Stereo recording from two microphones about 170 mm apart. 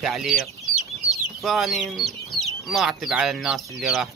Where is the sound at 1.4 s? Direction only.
Centre (ahead or behind).